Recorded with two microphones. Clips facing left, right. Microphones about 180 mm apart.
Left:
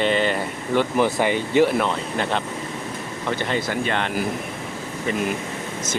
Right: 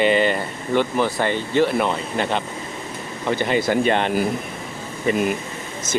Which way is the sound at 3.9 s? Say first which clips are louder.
Right 5 dB; 20° right (ahead or behind).